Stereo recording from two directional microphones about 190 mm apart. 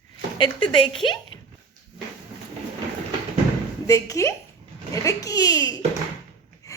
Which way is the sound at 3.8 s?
15° left (ahead or behind).